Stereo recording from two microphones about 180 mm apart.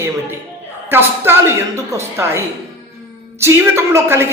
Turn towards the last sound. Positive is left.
turn(degrees=-15)  # may be behind; listen again after turning